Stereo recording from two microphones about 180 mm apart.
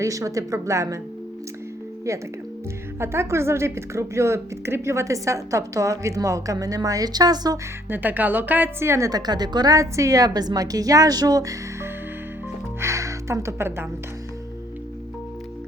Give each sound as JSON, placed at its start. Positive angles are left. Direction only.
{"t": 0.0, "sound": "a woman's voice", "side_deg": -20}
{"t": 2.1, "sound": "a woman's voice", "side_deg": -15}
{"t": 7.9, "sound": "a woman's voice", "side_deg": -10}